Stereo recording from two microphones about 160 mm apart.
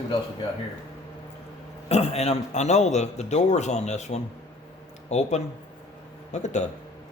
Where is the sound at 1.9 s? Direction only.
40° left (ahead or behind).